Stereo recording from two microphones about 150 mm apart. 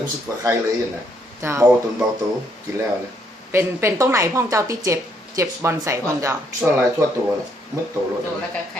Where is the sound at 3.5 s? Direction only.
15° right (ahead or behind).